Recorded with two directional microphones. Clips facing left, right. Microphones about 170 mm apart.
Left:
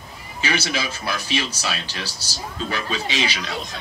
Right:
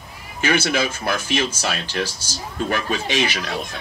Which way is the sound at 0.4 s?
50° right (ahead or behind).